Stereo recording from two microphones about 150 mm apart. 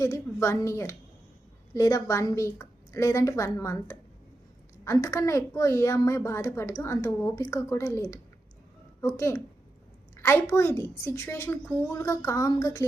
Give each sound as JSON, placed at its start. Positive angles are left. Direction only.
{"t": 0.0, "sound": "a woman's voice", "side_deg": 20}